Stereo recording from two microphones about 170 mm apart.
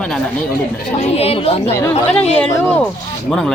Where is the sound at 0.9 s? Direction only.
40° left (ahead or behind).